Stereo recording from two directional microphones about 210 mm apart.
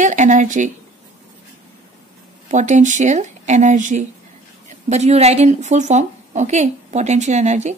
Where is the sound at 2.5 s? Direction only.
35° right (ahead or behind).